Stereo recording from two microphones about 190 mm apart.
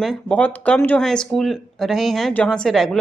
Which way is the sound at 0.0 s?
5° left (ahead or behind).